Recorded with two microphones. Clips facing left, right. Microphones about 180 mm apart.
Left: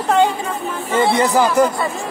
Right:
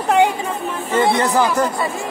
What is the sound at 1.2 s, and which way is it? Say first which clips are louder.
Speech: left 3 dB; 10° left (ahead or behind).